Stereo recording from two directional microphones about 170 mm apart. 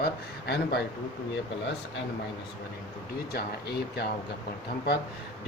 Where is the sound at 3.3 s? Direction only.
75° left (ahead or behind).